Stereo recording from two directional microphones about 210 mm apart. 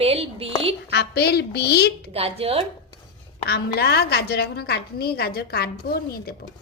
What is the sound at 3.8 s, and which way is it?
A woman's voice, 50° left (ahead or behind).